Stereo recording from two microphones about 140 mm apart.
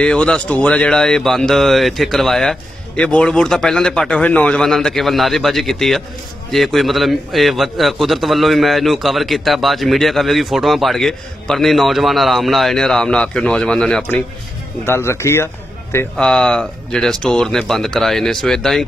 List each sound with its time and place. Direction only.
0.0 s a man's voice: 5° left (ahead or behind)
16.2 s a man's voice: 5° left (ahead or behind)